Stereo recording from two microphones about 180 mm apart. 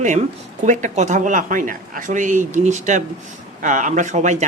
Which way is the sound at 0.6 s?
45° right (ahead or behind).